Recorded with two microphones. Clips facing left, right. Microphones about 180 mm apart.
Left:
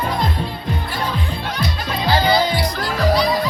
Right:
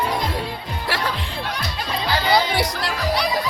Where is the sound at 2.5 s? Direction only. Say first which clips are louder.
Left 1 dB; 70° right (ahead or behind).